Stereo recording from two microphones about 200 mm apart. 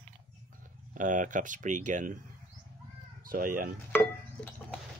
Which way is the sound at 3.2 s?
45° right (ahead or behind).